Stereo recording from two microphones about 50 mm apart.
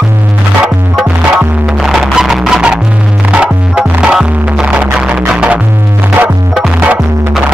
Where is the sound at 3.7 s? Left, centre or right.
Centre.